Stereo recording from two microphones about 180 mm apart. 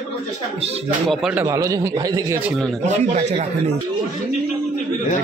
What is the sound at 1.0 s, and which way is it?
A man's voice, 5° right (ahead or behind).